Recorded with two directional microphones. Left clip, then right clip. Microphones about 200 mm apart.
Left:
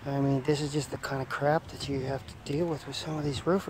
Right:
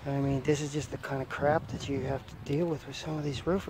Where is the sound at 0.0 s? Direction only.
5° left (ahead or behind).